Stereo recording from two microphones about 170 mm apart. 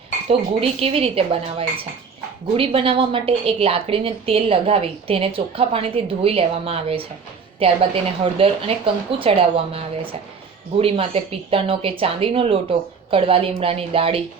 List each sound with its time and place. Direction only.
0.8 s a woman's voice: 35° right (ahead or behind)